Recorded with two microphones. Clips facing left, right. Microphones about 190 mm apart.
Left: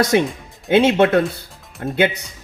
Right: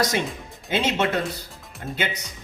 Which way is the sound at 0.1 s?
60° left (ahead or behind).